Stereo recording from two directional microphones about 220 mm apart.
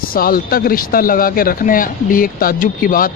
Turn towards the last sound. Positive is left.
turn(degrees=40)  # may be behind; listen again after turning